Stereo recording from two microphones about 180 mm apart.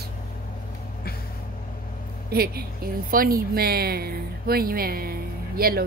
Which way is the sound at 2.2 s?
60° right (ahead or behind).